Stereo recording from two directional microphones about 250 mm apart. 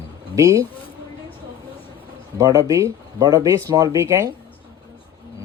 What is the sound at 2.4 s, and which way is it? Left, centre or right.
Speech, centre.